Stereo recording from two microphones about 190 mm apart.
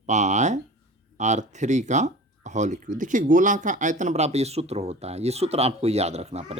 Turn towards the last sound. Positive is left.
turn(degrees=-35)  # may be behind; listen again after turning